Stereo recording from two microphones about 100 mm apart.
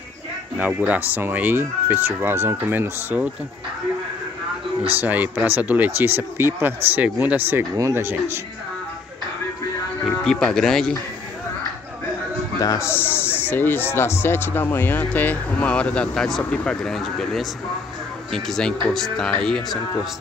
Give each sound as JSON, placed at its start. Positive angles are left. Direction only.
{"t": 0.6, "sound": "speech", "side_deg": -15}
{"t": 5.0, "sound": "speech", "side_deg": -15}
{"t": 10.2, "sound": "speech", "side_deg": 5}
{"t": 12.5, "sound": "speech", "side_deg": 30}